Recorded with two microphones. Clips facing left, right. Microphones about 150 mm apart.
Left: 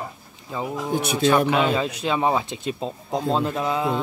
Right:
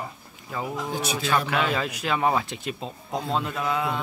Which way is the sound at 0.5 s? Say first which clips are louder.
Left 4 dB; 20° left (ahead or behind).